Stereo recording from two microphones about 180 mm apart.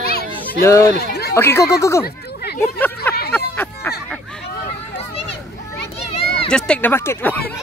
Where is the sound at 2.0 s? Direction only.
60° left (ahead or behind).